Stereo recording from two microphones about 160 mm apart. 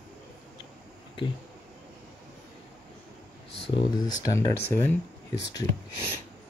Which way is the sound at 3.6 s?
30° left (ahead or behind).